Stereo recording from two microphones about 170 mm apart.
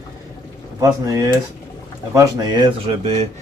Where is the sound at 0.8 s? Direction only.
20° right (ahead or behind).